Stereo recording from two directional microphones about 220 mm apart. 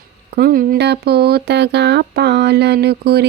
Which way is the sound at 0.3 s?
45° right (ahead or behind).